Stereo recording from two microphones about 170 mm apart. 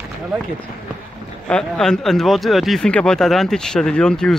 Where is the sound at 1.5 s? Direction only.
5° left (ahead or behind).